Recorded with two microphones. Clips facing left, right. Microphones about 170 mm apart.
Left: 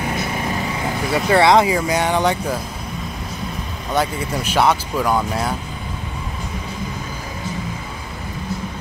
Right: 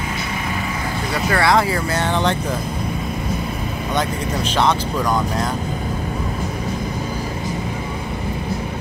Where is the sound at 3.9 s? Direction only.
10° left (ahead or behind).